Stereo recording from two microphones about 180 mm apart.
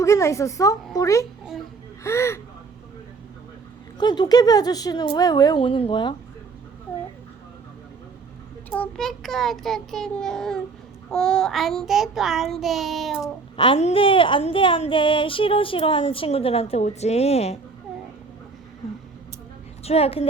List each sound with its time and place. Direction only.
0.0 s a woman's voice: 15° left (ahead or behind)
3.9 s speech: 25° left (ahead or behind)
8.7 s child singing: 5° left (ahead or behind)
13.2 s speech: 30° left (ahead or behind)
19.8 s a woman's voice: 35° left (ahead or behind)